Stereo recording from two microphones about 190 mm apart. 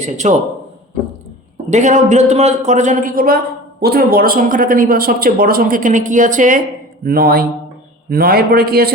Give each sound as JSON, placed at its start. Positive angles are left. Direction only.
{"t": 0.0, "sound": "a man's voice", "side_deg": -40}
{"t": 1.7, "sound": "a man's voice", "side_deg": -40}
{"t": 7.0, "sound": "a man's voice", "side_deg": -50}